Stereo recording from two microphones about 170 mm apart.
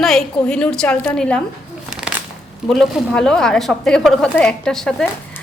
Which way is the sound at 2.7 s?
5° left (ahead or behind).